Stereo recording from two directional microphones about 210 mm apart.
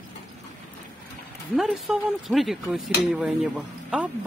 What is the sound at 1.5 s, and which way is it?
Speech, centre (ahead or behind).